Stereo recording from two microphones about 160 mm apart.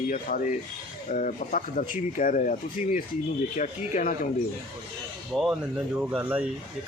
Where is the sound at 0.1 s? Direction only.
60° left (ahead or behind).